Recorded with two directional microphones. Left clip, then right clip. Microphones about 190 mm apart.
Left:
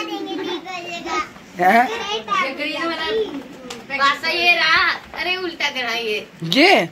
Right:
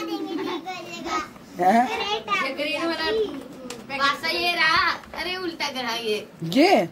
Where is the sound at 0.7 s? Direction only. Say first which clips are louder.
Left 4 dB; 70° right (ahead or behind).